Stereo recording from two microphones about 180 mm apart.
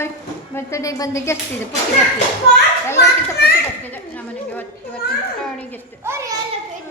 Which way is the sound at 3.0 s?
60° left (ahead or behind).